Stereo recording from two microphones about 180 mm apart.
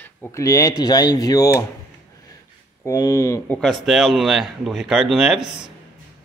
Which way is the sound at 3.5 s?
Centre (ahead or behind).